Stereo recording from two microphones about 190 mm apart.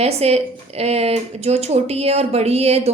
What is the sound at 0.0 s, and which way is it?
A woman's voice, 30° right (ahead or behind).